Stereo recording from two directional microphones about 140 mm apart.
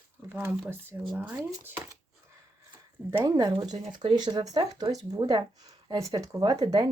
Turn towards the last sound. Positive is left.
turn(degrees=-25)  # may be behind; listen again after turning